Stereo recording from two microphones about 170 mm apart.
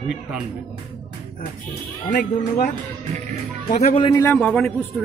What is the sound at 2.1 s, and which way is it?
Speech, 50° left (ahead or behind).